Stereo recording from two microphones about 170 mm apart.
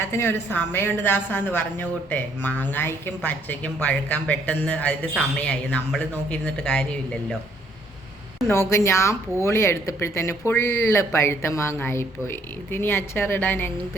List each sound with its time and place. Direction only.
0.0 s a woman's voice: 15° left (ahead or behind)
8.4 s a woman's voice: 15° left (ahead or behind)